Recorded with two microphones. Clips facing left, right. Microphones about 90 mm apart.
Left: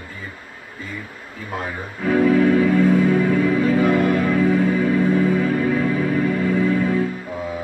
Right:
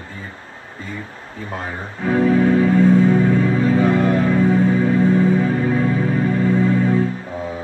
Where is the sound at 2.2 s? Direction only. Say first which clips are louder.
Right 1 dB; 30° right (ahead or behind).